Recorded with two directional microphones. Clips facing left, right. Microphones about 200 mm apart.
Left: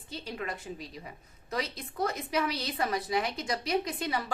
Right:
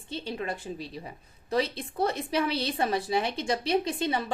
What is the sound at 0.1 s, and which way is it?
A woman's voice, 30° right (ahead or behind).